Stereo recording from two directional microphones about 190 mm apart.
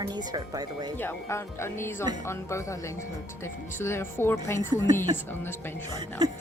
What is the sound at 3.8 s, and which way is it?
Speech, 15° left (ahead or behind).